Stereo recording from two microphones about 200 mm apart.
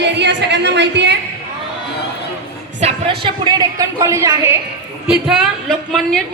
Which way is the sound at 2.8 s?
25° right (ahead or behind).